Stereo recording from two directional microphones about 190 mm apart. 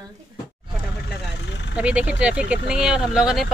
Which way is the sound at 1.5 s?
65° left (ahead or behind).